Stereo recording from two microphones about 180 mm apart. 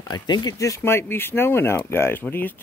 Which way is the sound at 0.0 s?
25° left (ahead or behind).